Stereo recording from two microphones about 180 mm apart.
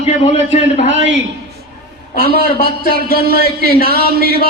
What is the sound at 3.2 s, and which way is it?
Speech, 55° right (ahead or behind).